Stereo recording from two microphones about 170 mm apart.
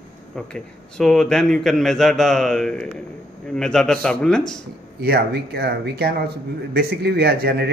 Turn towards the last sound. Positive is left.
turn(degrees=-65)  # may be behind; listen again after turning